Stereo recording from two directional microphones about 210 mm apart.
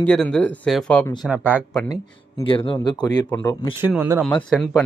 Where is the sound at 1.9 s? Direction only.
20° left (ahead or behind).